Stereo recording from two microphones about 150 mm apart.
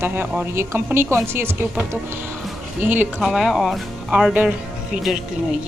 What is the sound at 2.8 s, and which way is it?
Speech, 10° right (ahead or behind).